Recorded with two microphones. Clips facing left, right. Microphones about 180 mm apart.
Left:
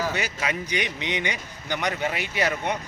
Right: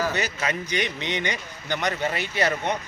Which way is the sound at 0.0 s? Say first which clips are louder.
Right 1 dB; 10° left (ahead or behind).